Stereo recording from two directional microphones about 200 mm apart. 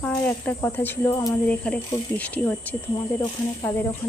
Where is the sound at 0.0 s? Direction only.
5° left (ahead or behind).